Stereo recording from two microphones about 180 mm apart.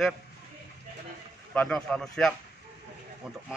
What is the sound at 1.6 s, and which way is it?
Speech, 5° left (ahead or behind).